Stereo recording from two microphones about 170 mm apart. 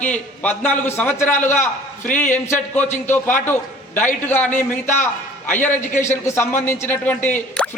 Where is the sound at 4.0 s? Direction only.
10° left (ahead or behind).